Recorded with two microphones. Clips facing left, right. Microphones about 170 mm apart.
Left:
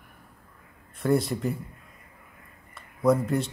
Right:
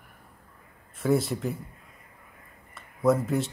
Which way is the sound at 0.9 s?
Centre (ahead or behind).